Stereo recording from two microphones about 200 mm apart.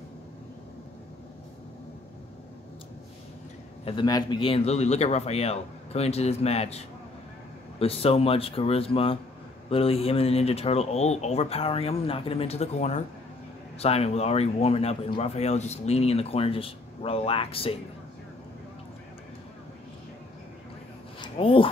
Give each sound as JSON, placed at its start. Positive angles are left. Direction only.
{"t": 3.8, "sound": "speech", "side_deg": 20}
{"t": 7.8, "sound": "speech", "side_deg": 30}
{"t": 21.2, "sound": "speech", "side_deg": 25}